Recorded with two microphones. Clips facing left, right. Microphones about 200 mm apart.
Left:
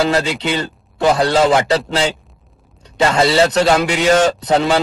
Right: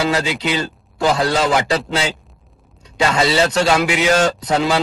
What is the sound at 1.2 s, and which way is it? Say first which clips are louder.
Speech: left 4 dB; 25° left (ahead or behind).